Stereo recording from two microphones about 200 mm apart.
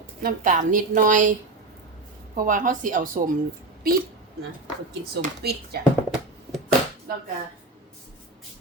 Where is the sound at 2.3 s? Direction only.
40° right (ahead or behind).